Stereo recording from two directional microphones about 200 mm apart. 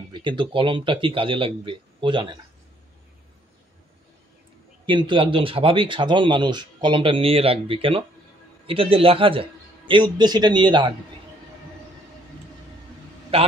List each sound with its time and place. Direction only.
0.1 s speech: 25° right (ahead or behind)
4.8 s speech: 25° right (ahead or behind)
13.3 s speech: 30° right (ahead or behind)